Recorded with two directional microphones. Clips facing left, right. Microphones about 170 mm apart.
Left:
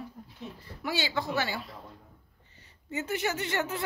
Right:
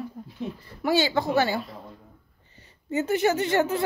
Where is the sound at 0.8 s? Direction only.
45° right (ahead or behind).